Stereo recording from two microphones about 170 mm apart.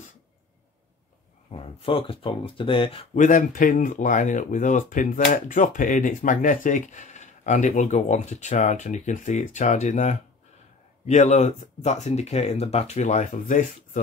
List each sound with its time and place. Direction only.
1.5 s speech: 35° left (ahead or behind)
3.2 s speech: 50° left (ahead or behind)